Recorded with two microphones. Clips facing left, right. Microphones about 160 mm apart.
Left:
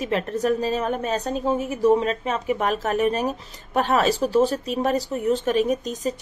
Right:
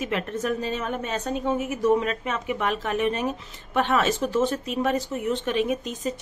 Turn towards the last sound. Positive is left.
turn(degrees=40)  # may be behind; listen again after turning